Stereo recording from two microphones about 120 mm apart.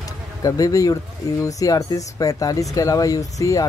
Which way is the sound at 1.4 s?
30° left (ahead or behind).